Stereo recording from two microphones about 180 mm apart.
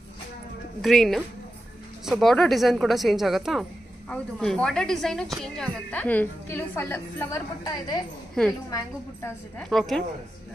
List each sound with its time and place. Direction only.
0.8 s a woman's voice: centre (ahead or behind); by 9.3 s 20° left (ahead or behind)
9.6 s a woman's voice: 5° left (ahead or behind)